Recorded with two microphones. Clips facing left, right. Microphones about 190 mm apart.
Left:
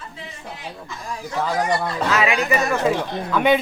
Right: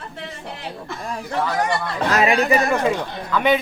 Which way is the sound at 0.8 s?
60° right (ahead or behind).